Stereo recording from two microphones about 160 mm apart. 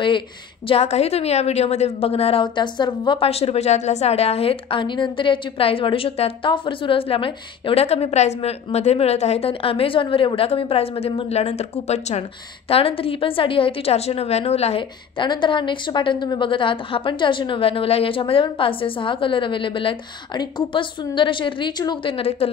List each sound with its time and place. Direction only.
0.7 s a woman's voice: 40° left (ahead or behind)